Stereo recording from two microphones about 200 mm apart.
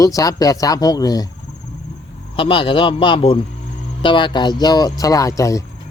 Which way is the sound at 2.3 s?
25° left (ahead or behind).